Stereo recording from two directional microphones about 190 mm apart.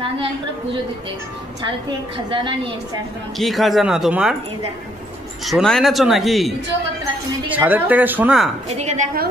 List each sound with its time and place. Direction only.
2.3 s a woman's voice: 25° right (ahead or behind)
3.3 s speech: centre (ahead or behind)
5.4 s speech: centre (ahead or behind)
8.6 s a woman's voice: 35° right (ahead or behind)